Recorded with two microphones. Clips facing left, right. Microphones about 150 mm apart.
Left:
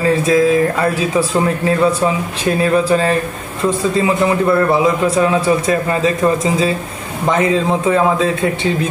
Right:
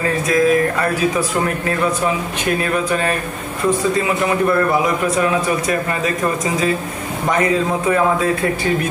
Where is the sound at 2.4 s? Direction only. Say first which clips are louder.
Left 6 dB; 30° left (ahead or behind).